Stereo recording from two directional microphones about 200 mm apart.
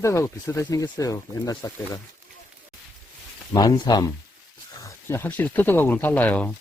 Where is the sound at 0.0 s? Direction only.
15° left (ahead or behind).